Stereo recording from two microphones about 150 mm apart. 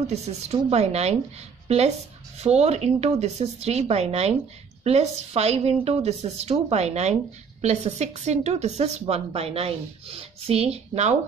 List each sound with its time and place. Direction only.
0.0 s a woman's voice: 45° right (ahead or behind)
2.3 s a woman's voice: 45° right (ahead or behind)